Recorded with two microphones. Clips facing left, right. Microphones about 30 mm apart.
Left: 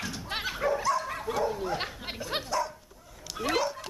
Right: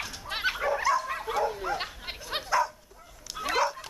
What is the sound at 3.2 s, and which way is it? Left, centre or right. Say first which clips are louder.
Bow-wow: right 1 dB; centre.